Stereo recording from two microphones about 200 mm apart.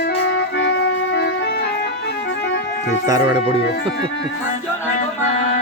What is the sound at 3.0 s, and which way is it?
Speech, 15° right (ahead or behind).